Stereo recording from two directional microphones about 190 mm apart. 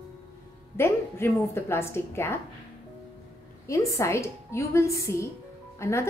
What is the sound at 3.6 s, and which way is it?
A woman's voice, 15° left (ahead or behind).